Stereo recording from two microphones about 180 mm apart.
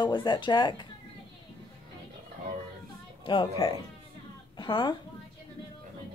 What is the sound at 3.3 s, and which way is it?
Speech, 30° left (ahead or behind).